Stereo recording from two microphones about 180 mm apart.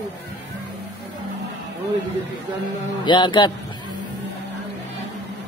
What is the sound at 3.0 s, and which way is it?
Speech, 25° left (ahead or behind).